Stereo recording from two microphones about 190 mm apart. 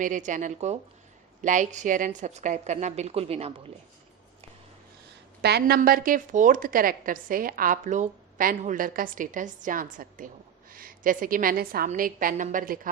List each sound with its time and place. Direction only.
0.0 s a woman's voice: 40° right (ahead or behind)
5.4 s a woman's voice: 60° right (ahead or behind)